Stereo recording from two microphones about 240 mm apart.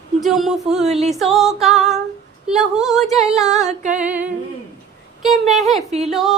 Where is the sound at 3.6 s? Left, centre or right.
Right.